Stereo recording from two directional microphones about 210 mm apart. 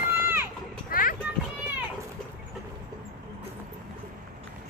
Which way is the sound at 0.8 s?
40° left (ahead or behind).